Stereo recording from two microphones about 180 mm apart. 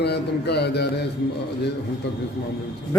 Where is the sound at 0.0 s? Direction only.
65° left (ahead or behind).